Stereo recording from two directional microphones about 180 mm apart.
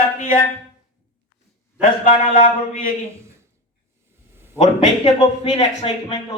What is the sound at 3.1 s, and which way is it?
Speech, 15° right (ahead or behind).